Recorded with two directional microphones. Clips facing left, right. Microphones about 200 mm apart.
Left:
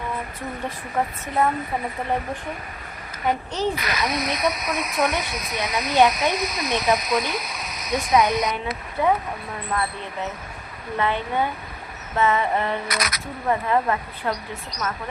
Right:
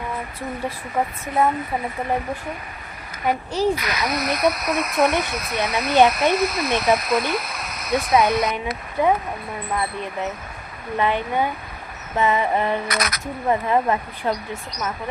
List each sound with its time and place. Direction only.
3.2 s speech: 10° right (ahead or behind)
9.0 s mantra: 15° right (ahead or behind)
10.9 s mantra: 15° right (ahead or behind)
12.9 s speech: 50° right (ahead or behind)
13.5 s speech: 20° right (ahead or behind)